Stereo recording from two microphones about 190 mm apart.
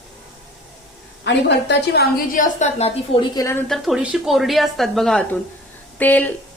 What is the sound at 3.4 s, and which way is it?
Speech, 20° left (ahead or behind).